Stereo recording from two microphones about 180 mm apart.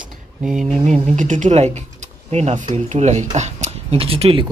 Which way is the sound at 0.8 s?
40° right (ahead or behind).